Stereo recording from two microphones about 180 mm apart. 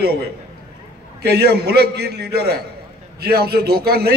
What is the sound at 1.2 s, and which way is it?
A man's voice, 60° right (ahead or behind).